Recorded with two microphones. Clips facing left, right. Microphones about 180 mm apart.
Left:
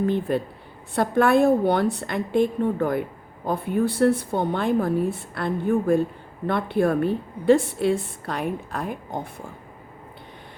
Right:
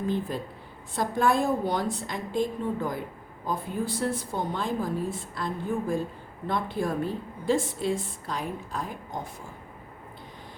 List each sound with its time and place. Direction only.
0.0 s a woman's voice: 65° left (ahead or behind)